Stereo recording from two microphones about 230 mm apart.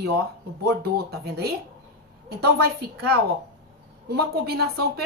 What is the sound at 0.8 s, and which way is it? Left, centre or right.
A woman's voice, right.